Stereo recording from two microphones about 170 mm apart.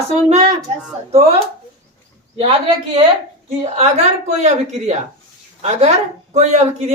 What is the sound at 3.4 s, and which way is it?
Speech, 40° right (ahead or behind).